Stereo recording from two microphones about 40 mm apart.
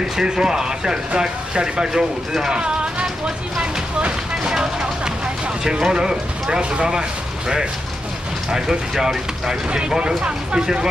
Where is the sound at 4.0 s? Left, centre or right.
Right.